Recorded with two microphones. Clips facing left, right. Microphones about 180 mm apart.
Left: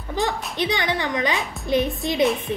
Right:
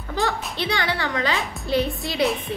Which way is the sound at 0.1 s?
20° left (ahead or behind).